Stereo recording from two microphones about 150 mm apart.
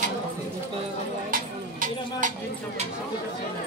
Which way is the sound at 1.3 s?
60° right (ahead or behind).